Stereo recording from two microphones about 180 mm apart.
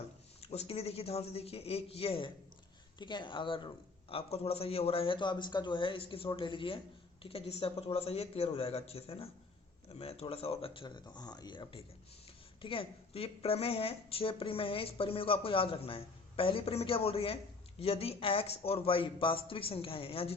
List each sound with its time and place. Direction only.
0.4 s a man's voice: 35° left (ahead or behind)